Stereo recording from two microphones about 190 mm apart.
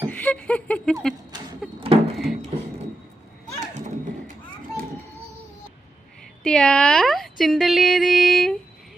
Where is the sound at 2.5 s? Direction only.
35° right (ahead or behind).